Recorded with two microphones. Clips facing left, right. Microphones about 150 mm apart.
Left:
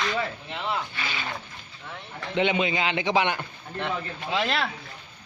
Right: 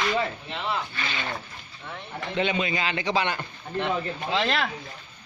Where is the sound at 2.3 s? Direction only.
20° left (ahead or behind).